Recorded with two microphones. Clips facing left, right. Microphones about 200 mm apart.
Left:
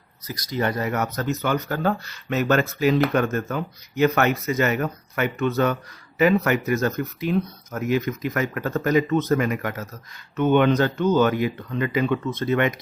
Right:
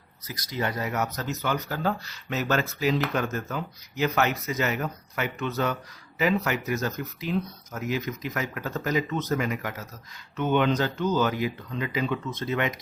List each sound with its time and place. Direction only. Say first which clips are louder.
0.5 s speech: left 5 dB; 55° left (ahead or behind)